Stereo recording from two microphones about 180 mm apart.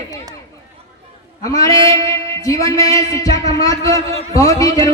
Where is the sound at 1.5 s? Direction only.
20° left (ahead or behind).